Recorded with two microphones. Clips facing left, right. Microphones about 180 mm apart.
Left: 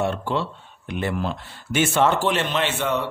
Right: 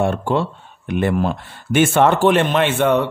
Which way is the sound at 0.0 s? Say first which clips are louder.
Right 5 dB; 50° right (ahead or behind).